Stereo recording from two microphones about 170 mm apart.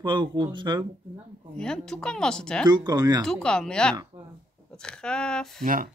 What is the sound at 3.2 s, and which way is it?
Speech, 5° left (ahead or behind).